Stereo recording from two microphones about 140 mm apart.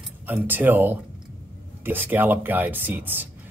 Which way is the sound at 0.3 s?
15° right (ahead or behind).